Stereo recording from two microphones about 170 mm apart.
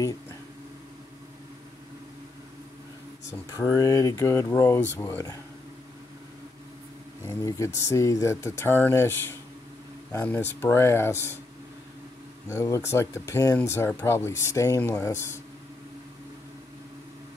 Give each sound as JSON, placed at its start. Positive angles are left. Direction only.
{"t": 3.3, "sound": "speech", "side_deg": 20}
{"t": 7.2, "sound": "speech", "side_deg": 20}
{"t": 12.4, "sound": "speech", "side_deg": 15}